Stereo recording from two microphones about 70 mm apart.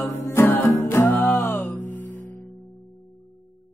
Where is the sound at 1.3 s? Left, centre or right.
Left.